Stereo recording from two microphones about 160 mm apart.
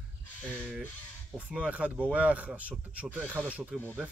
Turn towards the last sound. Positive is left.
turn(degrees=-10)  # may be behind; listen again after turning